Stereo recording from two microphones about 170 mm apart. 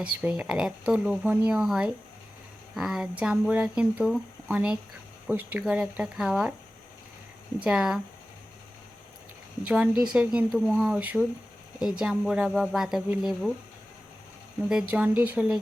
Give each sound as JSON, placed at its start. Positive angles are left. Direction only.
{"t": 0.0, "sound": "speech", "side_deg": -10}
{"t": 7.6, "sound": "speech", "side_deg": -5}
{"t": 9.6, "sound": "speech", "side_deg": -5}
{"t": 14.7, "sound": "speech", "side_deg": -5}